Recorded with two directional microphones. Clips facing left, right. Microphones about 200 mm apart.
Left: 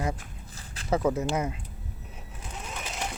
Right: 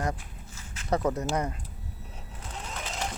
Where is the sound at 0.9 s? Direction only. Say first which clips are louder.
Left 1 dB; centre (ahead or behind).